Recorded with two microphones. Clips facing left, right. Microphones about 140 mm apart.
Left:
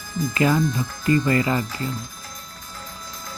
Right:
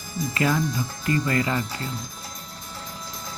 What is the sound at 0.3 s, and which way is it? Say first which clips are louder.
Speech: left 4 dB; 10° left (ahead or behind).